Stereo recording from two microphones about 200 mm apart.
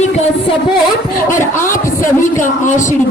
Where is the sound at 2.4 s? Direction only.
40° left (ahead or behind).